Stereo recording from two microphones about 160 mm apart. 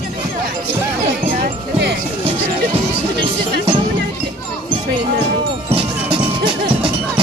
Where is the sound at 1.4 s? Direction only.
90° right.